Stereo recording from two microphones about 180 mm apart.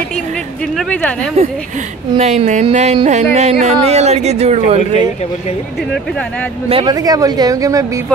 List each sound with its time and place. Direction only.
0.7 s speech: 5° left (ahead or behind)
2.1 s speech: 40° right (ahead or behind)
6.7 s a woman's voice: 25° right (ahead or behind)